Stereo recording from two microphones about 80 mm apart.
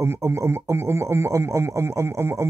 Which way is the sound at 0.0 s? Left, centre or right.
Right.